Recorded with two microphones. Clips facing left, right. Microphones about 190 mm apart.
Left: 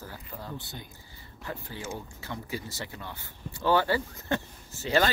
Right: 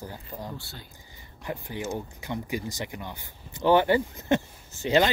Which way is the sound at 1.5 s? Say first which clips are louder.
Right 5 dB; 15° right (ahead or behind).